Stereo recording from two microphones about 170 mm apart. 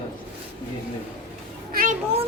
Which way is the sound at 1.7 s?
60° right (ahead or behind).